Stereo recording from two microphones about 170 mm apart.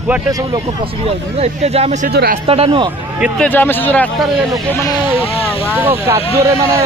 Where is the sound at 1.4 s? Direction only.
35° right (ahead or behind).